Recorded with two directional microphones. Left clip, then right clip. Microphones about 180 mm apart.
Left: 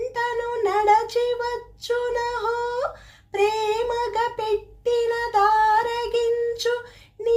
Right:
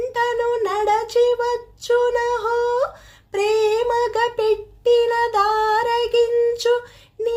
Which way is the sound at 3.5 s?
30° right (ahead or behind).